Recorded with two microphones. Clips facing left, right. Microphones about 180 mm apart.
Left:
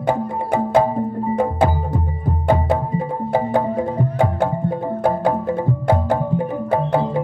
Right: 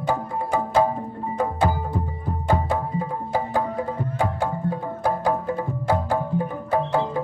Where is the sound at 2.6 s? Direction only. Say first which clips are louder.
Left 5 dB; 20° left (ahead or behind).